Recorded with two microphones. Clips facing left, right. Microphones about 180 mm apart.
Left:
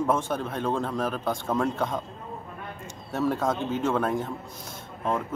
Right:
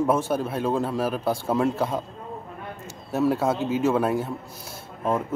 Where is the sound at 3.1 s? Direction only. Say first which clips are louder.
Right 4 dB; 10° right (ahead or behind).